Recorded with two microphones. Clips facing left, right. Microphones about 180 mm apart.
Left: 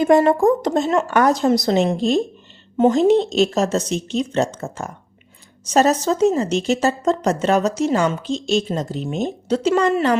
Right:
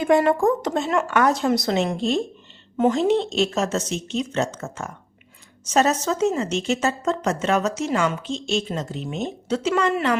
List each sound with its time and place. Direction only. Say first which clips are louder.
0.0 s a woman's voice: left 4 dB; 40° left (ahead or behind)
2.7 s a woman's voice: left 4 dB; 30° left (ahead or behind)
3.0 s a woman's voice: left 5 dB; 40° left (ahead or behind)